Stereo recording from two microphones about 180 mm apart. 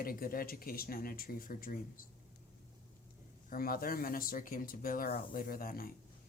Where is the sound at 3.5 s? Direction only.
55° left (ahead or behind).